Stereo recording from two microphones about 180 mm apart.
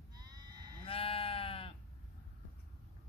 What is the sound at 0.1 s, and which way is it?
Sheep, 20° right (ahead or behind).